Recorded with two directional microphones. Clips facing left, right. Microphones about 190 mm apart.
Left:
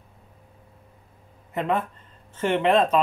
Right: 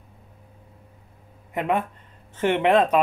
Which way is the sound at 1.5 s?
15° right (ahead or behind).